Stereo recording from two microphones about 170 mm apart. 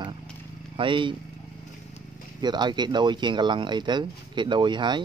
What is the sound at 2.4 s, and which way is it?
Speech, 25° right (ahead or behind).